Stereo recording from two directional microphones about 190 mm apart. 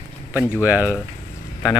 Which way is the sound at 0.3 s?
10° right (ahead or behind).